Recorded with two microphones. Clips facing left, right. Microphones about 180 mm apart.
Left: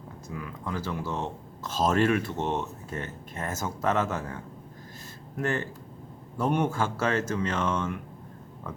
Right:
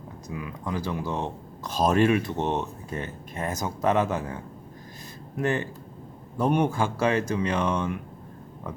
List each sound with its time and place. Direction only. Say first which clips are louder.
0.3 s speech: right 3 dB; 15° right (ahead or behind)
5.4 s speech: right 3 dB; 15° right (ahead or behind)